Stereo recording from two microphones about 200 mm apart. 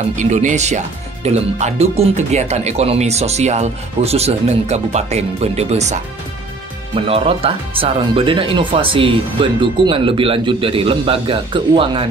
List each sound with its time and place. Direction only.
0.2 s speech: 40° right (ahead or behind)
7.1 s speech: 30° right (ahead or behind)